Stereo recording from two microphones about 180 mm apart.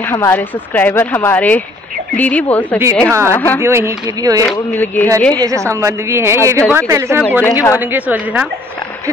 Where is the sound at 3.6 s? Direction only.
15° right (ahead or behind).